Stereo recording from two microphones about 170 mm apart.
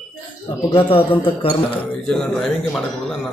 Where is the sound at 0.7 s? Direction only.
30° left (ahead or behind).